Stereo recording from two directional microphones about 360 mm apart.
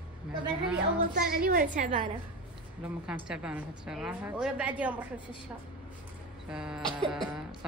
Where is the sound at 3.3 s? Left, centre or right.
Centre.